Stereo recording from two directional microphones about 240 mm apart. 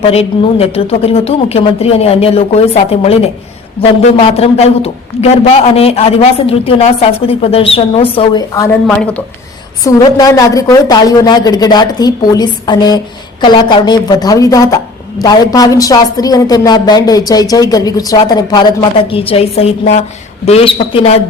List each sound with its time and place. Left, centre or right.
0.0 s a man's voice: left; by 9.2 s centre
9.8 s a woman's voice: centre